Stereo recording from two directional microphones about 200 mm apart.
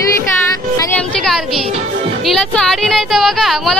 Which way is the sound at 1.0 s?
Centre (ahead or behind).